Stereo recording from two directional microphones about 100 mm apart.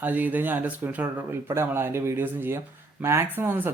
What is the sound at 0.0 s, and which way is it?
Speech, 15° right (ahead or behind).